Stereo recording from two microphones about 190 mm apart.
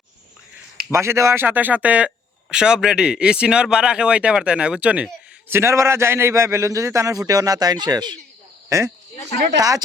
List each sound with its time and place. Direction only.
0.9 s speech: 15° right (ahead or behind)